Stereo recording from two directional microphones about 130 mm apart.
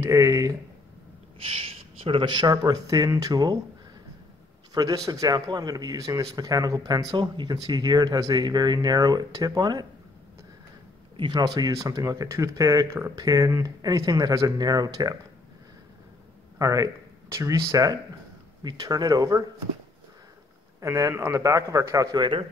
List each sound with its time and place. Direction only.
0.0 s speech: 25° right (ahead or behind)
1.4 s speech: 45° right (ahead or behind); by 3.5 s 30° right (ahead or behind)
4.7 s speech: 25° right (ahead or behind)
11.1 s speech: 35° right (ahead or behind)
16.5 s speech: 25° right (ahead or behind)
20.8 s speech: 20° right (ahead or behind); by 22.5 s 40° right (ahead or behind)